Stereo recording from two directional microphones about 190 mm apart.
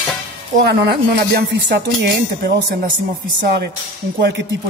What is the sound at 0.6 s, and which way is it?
Speech, 55° right (ahead or behind).